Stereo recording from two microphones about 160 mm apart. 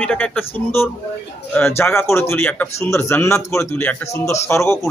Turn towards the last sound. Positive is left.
turn(degrees=15)  # may be behind; listen again after turning